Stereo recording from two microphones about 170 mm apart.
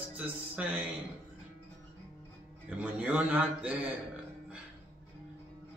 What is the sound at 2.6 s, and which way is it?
Mantra, 10° right (ahead or behind).